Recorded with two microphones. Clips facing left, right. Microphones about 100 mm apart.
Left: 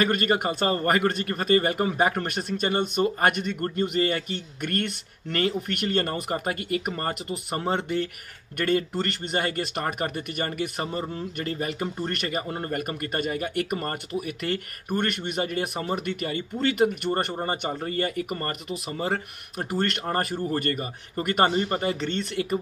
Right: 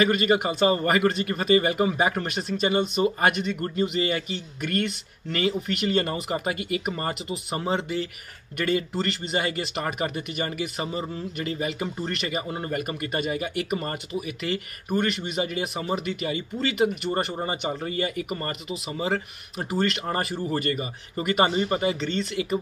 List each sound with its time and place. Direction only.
0.0 s speech: 45° left (ahead or behind)
12.4 s speech: 10° right (ahead or behind)
13.0 s speech: 45° left (ahead or behind)
21.5 s speech: 10° right (ahead or behind)
22.0 s speech: 50° left (ahead or behind)